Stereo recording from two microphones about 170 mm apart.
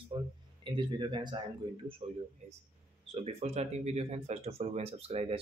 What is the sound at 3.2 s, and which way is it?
Speech, 40° right (ahead or behind).